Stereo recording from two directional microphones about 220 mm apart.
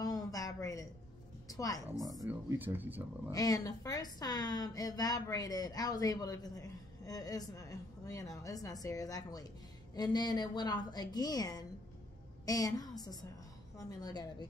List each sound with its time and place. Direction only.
0.0 s a sound: 15° left (ahead or behind)
1.5 s a woman's voice: 15° left (ahead or behind)
1.9 s speech: centre (ahead or behind)
3.3 s a woman's voice: 15° left (ahead or behind)